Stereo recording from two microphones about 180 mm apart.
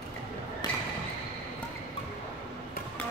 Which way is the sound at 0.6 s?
25° left (ahead or behind).